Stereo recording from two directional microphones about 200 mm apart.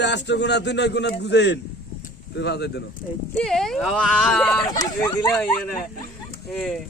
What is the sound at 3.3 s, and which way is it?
Speech, 5° left (ahead or behind).